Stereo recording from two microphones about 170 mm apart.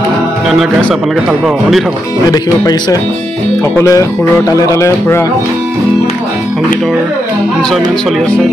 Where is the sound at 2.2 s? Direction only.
25° left (ahead or behind).